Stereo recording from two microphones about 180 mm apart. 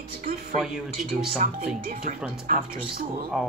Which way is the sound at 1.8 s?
50° right (ahead or behind).